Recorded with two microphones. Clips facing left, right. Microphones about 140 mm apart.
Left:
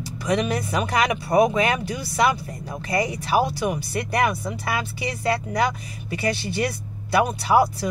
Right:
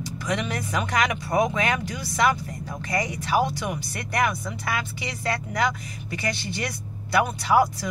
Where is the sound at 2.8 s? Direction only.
30° left (ahead or behind).